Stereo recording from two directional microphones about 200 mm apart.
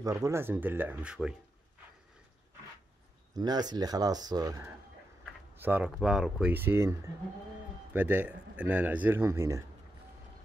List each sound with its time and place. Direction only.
0.0 s a man's voice: 15° right (ahead or behind)
3.3 s a man's voice: 20° right (ahead or behind)